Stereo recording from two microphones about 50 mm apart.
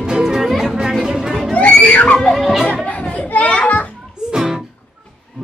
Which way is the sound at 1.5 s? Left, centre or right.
Left.